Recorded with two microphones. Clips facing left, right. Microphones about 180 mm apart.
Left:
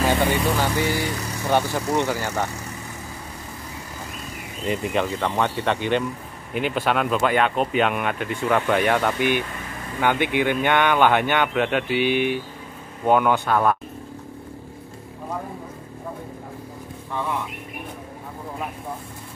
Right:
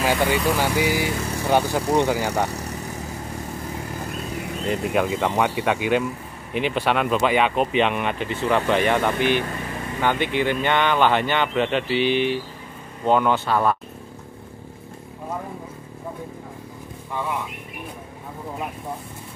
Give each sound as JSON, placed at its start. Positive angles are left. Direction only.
{"t": 0.0, "sound": "speech", "side_deg": -10}
{"t": 4.6, "sound": "speech", "side_deg": 0}
{"t": 5.1, "sound": "speech", "side_deg": -10}
{"t": 11.9, "sound": "speech", "side_deg": 55}
{"t": 13.0, "sound": "speech", "side_deg": 10}